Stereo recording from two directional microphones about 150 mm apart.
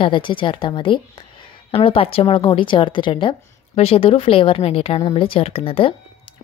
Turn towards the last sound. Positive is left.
turn(degrees=40)  # may be behind; listen again after turning